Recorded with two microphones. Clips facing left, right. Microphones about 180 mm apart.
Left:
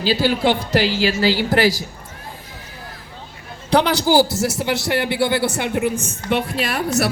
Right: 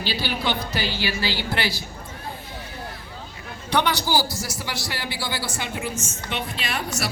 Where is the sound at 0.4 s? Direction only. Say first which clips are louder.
Left 8 dB; 90° left.